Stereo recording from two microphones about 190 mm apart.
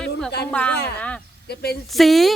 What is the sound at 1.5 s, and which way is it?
Speech, 55° left (ahead or behind).